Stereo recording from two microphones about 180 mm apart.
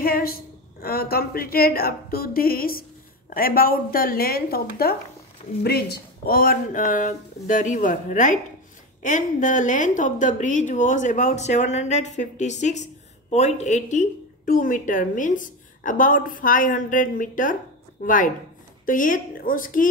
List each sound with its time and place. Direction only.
0.0 s a woman's voice: 55° left (ahead or behind)